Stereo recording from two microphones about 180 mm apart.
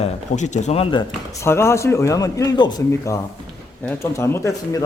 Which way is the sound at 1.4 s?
15° left (ahead or behind).